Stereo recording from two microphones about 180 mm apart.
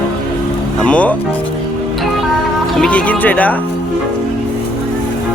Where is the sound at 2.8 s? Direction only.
5° left (ahead or behind).